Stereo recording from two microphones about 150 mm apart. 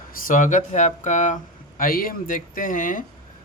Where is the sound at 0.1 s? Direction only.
65° left (ahead or behind).